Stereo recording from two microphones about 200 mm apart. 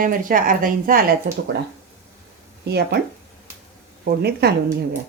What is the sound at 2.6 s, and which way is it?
Speech, 55° right (ahead or behind).